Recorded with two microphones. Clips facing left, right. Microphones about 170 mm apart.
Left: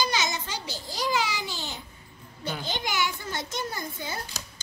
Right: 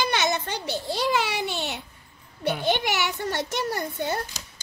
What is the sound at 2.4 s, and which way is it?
A child's voice, 65° right (ahead or behind).